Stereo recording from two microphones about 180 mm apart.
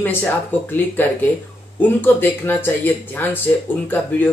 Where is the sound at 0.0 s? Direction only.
10° left (ahead or behind).